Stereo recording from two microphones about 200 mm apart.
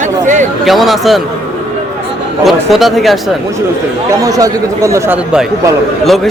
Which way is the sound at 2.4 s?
Centre (ahead or behind).